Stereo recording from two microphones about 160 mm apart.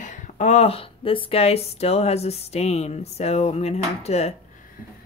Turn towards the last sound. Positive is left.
turn(degrees=40)  # may be behind; listen again after turning